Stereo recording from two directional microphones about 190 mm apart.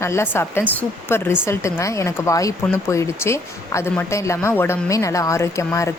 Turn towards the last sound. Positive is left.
turn(degrees=15)  # may be behind; listen again after turning